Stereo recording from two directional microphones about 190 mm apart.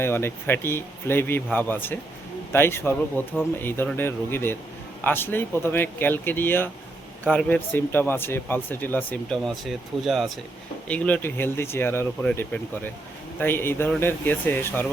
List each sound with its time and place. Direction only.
0.0 s speech: 10° left (ahead or behind)